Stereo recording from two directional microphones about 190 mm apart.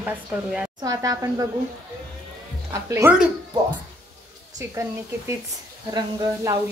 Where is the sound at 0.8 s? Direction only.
20° right (ahead or behind).